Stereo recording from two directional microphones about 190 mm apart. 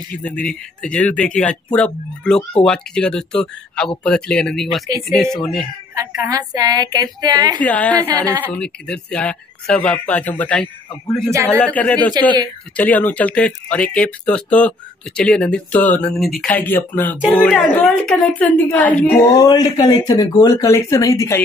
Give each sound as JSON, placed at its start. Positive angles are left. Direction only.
{"t": 0.1, "sound": "speech", "side_deg": 5}
{"t": 5.9, "sound": "a woman's voice", "side_deg": -15}
{"t": 7.5, "sound": "speech", "side_deg": 10}
{"t": 19.2, "sound": "speech", "side_deg": 20}